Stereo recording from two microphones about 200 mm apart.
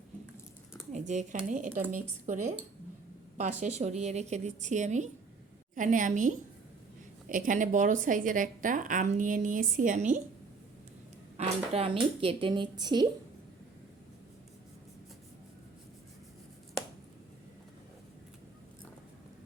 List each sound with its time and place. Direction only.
0.9 s a woman's voice: 35° right (ahead or behind)
11.4 s a woman's voice: 35° right (ahead or behind)